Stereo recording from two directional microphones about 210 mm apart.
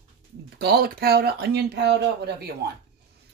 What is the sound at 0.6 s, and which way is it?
Speech, 50° right (ahead or behind).